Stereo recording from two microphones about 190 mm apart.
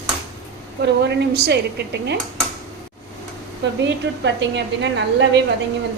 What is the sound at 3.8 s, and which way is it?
A woman's voice, 70° right (ahead or behind).